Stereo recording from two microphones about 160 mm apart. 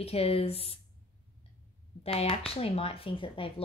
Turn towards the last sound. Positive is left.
turn(degrees=35)  # may be behind; listen again after turning